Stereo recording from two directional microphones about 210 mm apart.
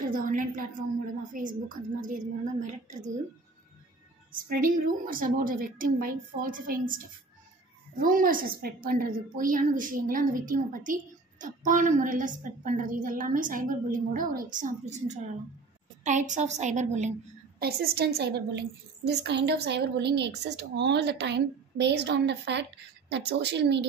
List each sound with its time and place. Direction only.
0.1 s a woman's voice: 40° right (ahead or behind)
4.3 s a woman's voice: 40° right (ahead or behind)
8.0 s a woman's voice: 40° right (ahead or behind)
17.6 s a woman's voice: 45° right (ahead or behind)